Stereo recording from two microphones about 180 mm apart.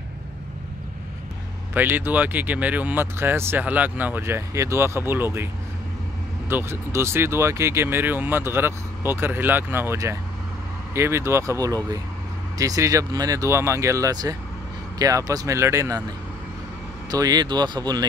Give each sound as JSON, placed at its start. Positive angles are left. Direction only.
{"t": 1.7, "sound": "speech", "side_deg": -10}
{"t": 6.5, "sound": "speech", "side_deg": -15}
{"t": 17.1, "sound": "speech", "side_deg": -20}